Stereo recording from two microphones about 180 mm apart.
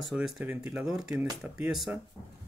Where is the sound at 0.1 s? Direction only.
5° right (ahead or behind).